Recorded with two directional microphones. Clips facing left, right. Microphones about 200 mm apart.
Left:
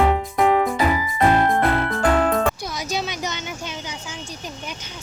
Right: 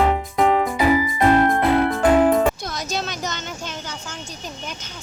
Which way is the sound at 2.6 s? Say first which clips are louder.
Even; 10° left (ahead or behind).